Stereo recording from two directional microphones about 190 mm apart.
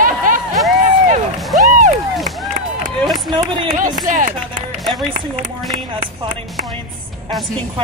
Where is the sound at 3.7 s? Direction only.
45° right (ahead or behind).